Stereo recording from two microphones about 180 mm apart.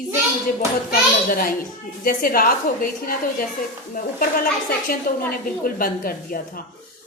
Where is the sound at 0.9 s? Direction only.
55° left (ahead or behind).